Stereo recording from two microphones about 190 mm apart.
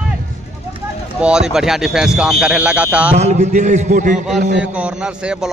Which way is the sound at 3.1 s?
35° right (ahead or behind).